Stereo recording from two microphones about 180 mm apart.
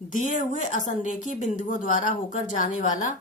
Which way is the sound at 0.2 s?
45° left (ahead or behind).